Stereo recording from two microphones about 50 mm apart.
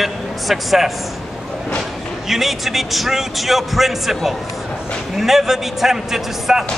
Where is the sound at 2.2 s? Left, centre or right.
Centre.